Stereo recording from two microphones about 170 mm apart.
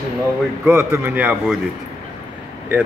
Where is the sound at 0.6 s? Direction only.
15° right (ahead or behind).